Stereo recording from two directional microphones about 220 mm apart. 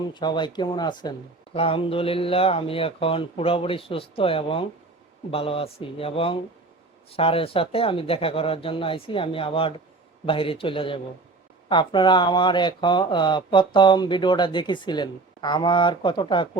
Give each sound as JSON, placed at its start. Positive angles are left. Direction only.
{"t": 0.1, "sound": "speech", "side_deg": 20}